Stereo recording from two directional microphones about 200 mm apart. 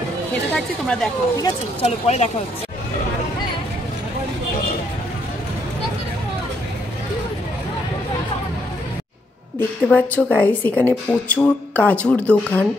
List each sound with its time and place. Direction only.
0.6 s speech: 5° left (ahead or behind)
1.8 s speech: 35° left (ahead or behind)
9.6 s a woman's voice: 10° left (ahead or behind)